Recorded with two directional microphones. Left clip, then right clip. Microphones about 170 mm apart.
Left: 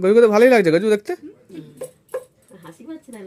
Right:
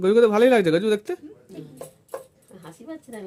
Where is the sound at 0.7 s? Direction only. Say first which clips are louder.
Left 4 dB; 10° right (ahead or behind).